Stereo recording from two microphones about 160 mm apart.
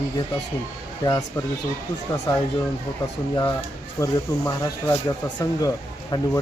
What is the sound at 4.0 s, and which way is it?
Speech, 20° left (ahead or behind).